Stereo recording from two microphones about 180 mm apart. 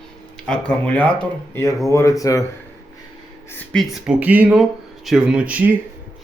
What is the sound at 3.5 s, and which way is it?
Speech, centre (ahead or behind).